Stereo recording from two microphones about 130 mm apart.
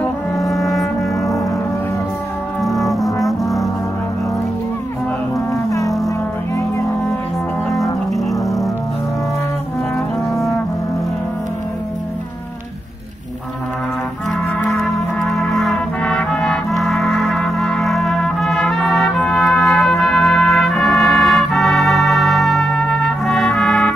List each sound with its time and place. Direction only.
0.4 s music: centre (ahead or behind)
2.6 s brass instrument: centre (ahead or behind)
5.5 s music: 25° left (ahead or behind)
7.7 s music: centre (ahead or behind)
14.8 s brass instrument: centre (ahead or behind)